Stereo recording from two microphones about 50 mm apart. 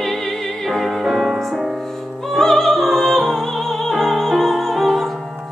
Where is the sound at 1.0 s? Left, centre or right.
Centre.